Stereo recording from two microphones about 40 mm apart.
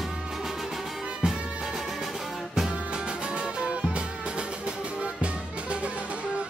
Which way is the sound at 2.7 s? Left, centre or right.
Right.